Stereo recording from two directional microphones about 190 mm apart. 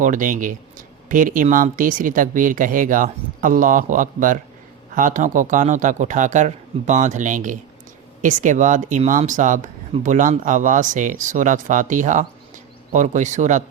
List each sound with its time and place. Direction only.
0.0 s speech: 45° right (ahead or behind)